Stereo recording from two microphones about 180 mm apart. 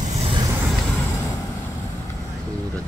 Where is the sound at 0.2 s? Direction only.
25° right (ahead or behind).